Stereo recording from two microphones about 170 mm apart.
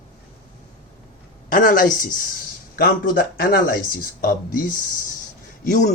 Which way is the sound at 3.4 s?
55° left (ahead or behind).